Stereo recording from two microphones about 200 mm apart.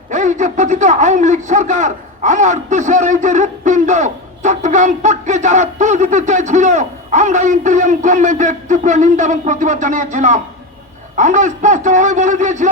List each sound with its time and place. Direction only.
0.1 s a man's voice: 40° right (ahead or behind)